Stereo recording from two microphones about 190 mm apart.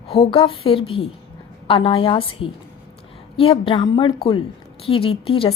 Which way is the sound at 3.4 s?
30° left (ahead or behind).